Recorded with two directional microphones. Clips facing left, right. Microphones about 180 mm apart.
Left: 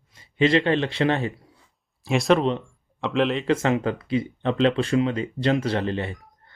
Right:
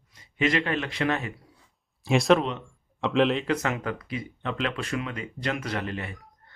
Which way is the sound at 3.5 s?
25° left (ahead or behind).